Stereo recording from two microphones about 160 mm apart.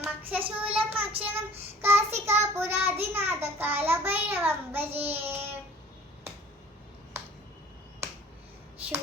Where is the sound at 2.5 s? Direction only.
15° right (ahead or behind).